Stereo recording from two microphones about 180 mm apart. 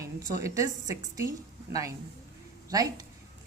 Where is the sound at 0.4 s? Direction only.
20° right (ahead or behind).